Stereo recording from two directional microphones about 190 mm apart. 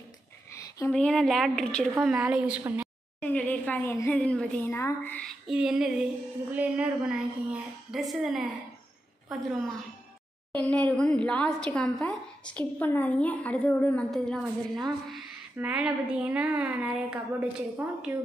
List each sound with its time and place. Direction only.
0.5 s a sound: 15° left (ahead or behind)
0.9 s a woman's voice: centre (ahead or behind)
3.2 s a woman's voice: 10° left (ahead or behind)
5.5 s a woman's voice: 5° right (ahead or behind)